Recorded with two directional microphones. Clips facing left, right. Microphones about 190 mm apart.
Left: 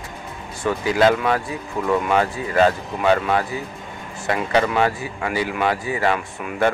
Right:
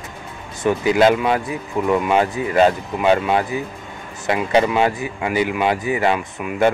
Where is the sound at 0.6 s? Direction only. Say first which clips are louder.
Right 3 dB; 20° right (ahead or behind).